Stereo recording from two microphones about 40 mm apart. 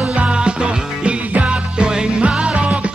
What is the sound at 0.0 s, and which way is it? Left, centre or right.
Music, right.